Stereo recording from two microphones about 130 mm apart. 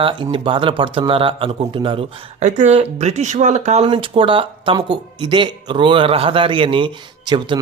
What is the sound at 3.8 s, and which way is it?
Speech, 40° right (ahead or behind).